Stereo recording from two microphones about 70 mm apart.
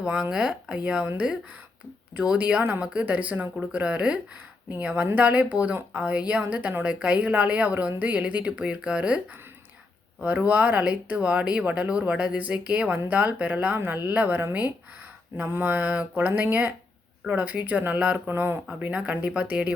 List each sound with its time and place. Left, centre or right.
0.0 s speech: centre
2.1 s speech: centre
5.1 s mantra: centre
5.7 s speech: centre
13.7 s mantra: right
18.3 s speech: right
18.7 s speech: centre